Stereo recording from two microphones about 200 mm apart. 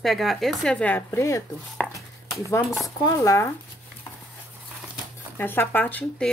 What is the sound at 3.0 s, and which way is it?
Speech, 15° left (ahead or behind).